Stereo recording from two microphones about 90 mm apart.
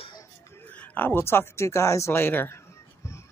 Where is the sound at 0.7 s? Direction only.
20° left (ahead or behind).